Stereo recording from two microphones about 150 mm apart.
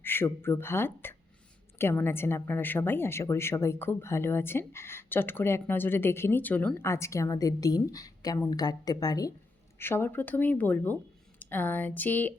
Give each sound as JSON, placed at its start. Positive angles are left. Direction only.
{"t": 0.0, "sound": "a woman's voice", "side_deg": 15}